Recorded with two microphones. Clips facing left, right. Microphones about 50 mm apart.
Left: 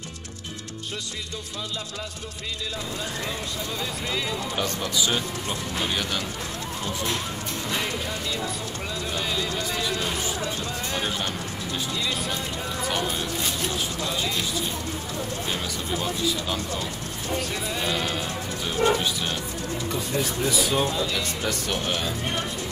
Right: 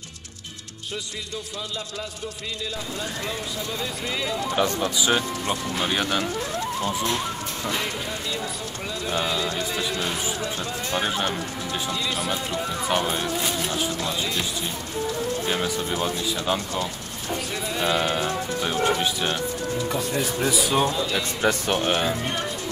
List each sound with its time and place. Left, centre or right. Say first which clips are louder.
3.8 s speech: even; centre
4.6 s speech: right 3 dB; centre
7.7 s speech: left 2 dB; centre
11.0 s speech: right 5 dB; centre
11.9 s speech: right 2 dB; centre
12.8 s speech: right 3 dB; centre
15.5 s speech: right 4 dB; centre
17.3 s speech: even; centre; by 18.8 s right
18.8 s speech: left 2 dB; centre
20.4 s speech: right 2 dB; centre
21.4 s speech: right 5 dB; right